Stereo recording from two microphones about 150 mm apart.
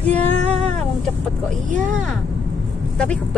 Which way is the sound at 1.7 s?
55° right (ahead or behind).